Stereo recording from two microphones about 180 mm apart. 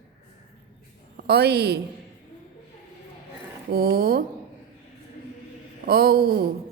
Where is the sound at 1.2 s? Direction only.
65° right (ahead or behind).